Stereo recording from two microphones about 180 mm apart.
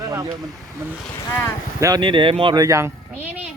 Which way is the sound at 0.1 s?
20° right (ahead or behind).